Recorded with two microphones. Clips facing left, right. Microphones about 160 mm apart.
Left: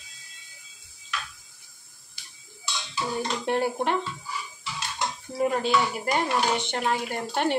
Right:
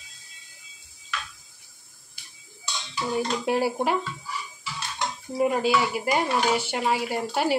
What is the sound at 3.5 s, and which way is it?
Frying, 5° right (ahead or behind).